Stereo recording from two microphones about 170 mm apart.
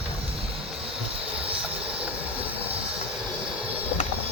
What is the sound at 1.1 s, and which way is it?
Train, 35° right (ahead or behind).